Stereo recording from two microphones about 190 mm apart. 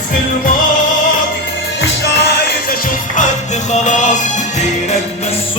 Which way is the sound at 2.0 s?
60° left (ahead or behind).